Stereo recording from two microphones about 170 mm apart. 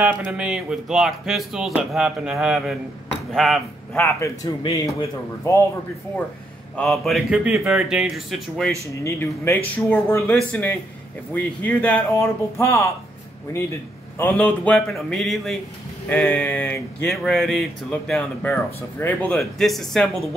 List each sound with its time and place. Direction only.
0.0 s speech: 5° right (ahead or behind)
4.0 s speech: 20° left (ahead or behind)
6.8 s speech: centre (ahead or behind)
9.0 s speech: 15° left (ahead or behind)